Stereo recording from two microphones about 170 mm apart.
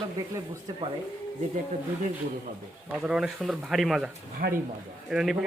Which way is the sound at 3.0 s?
5° right (ahead or behind).